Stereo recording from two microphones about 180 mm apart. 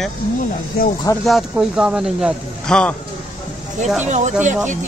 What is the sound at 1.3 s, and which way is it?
Speech, centre (ahead or behind).